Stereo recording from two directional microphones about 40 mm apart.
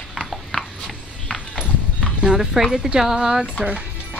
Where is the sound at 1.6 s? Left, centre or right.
Right.